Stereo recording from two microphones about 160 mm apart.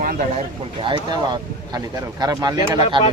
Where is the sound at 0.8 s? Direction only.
30° right (ahead or behind).